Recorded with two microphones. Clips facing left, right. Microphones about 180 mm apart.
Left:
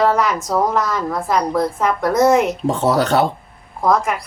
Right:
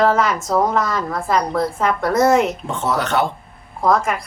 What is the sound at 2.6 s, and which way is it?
Speech, 35° left (ahead or behind).